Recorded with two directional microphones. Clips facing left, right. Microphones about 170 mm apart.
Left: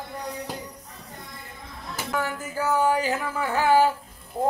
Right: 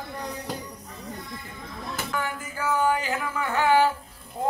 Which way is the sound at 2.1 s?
40° left (ahead or behind).